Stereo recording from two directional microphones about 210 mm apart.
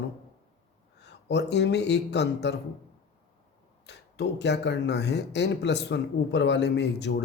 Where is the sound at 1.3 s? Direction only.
55° left (ahead or behind).